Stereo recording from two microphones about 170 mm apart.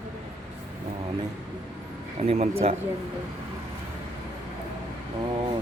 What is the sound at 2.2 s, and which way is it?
Speech, 40° right (ahead or behind).